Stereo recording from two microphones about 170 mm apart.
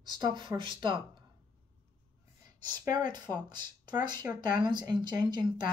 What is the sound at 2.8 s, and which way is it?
Speech, 25° right (ahead or behind).